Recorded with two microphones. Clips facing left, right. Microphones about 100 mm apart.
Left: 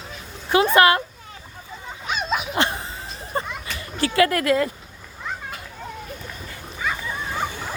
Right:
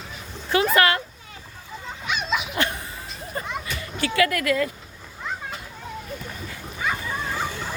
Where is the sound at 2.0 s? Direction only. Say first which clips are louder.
Left 1 dB; 40° left (ahead or behind).